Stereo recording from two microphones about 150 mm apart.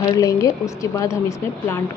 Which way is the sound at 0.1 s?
20° left (ahead or behind).